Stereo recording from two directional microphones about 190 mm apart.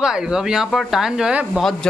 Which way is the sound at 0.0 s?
5° right (ahead or behind).